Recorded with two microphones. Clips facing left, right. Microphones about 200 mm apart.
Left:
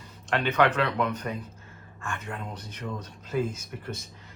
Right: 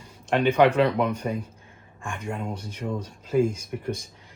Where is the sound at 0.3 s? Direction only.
10° right (ahead or behind).